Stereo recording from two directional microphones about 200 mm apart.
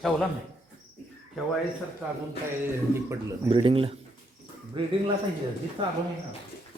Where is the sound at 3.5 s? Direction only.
25° right (ahead or behind).